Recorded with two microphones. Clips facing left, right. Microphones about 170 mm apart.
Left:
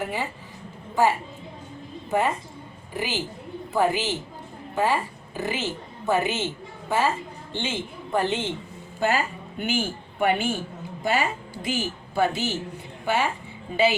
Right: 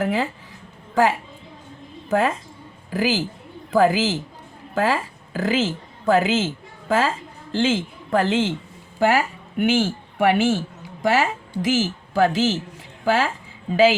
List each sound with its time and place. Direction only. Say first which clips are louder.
0.0 s a man's voice: right 7 dB; 90° right
2.0 s a woman's voice: right 3 dB; 90° right